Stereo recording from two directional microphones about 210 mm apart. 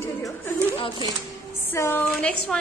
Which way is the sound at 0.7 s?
25° left (ahead or behind).